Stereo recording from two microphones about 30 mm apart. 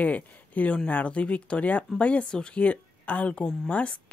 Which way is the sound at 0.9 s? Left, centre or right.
Left.